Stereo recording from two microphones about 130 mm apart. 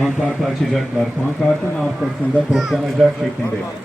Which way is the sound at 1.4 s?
10° left (ahead or behind).